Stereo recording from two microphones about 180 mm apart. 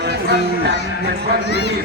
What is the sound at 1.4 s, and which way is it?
Speech, 70° left (ahead or behind).